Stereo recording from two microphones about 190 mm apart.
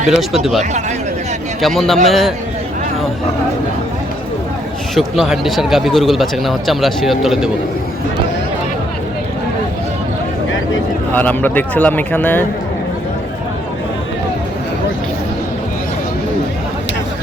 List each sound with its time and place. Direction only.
1.6 s speech: centre (ahead or behind)
4.9 s speech: centre (ahead or behind)
11.1 s speech: 10° left (ahead or behind)